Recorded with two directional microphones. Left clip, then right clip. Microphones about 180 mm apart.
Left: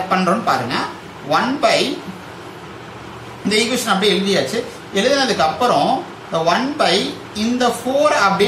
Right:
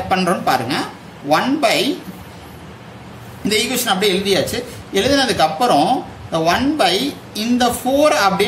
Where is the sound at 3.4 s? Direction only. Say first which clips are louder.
Even; 55° right (ahead or behind).